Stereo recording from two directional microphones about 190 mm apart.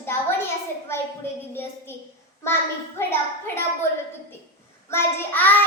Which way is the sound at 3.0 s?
15° left (ahead or behind).